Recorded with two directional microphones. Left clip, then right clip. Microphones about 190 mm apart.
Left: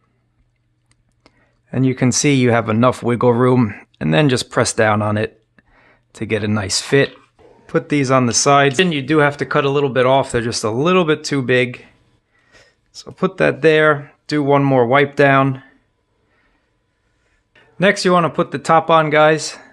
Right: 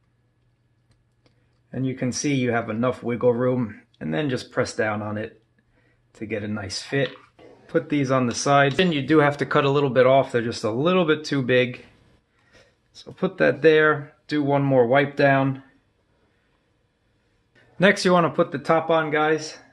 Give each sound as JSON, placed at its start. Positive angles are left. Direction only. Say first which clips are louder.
{"t": 1.7, "sound": "speech", "louder": "left 10 dB", "side_deg": 50}
{"t": 7.7, "sound": "speech", "louder": "left 6 dB", "side_deg": 45}
{"t": 17.5, "sound": "speech", "louder": "left 4 dB", "side_deg": 20}